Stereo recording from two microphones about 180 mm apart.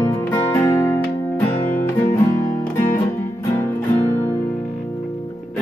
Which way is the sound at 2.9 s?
15° left (ahead or behind).